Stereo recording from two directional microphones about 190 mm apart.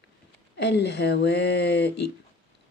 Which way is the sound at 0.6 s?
65° left (ahead or behind).